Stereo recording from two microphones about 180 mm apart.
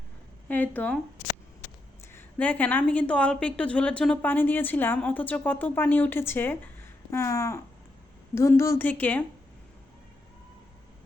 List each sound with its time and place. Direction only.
0.4 s a woman's voice: 10° left (ahead or behind)
2.1 s a woman's voice: 10° left (ahead or behind)